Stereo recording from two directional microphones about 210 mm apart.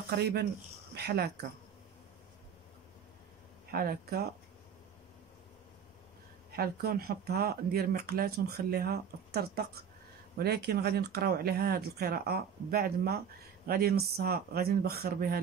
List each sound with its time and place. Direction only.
0.2 s speech: 50° right (ahead or behind)
3.7 s speech: 45° right (ahead or behind)
6.5 s speech: 45° right (ahead or behind)